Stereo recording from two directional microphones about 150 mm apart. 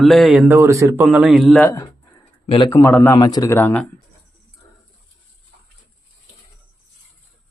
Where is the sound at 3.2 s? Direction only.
25° left (ahead or behind); by 3.8 s 10° left (ahead or behind).